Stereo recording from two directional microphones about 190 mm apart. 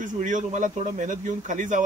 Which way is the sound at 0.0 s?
40° right (ahead or behind).